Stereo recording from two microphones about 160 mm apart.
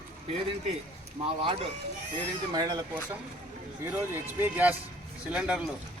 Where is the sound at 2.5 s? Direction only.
25° right (ahead or behind).